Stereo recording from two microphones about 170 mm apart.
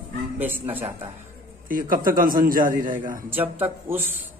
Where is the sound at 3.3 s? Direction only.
10° right (ahead or behind).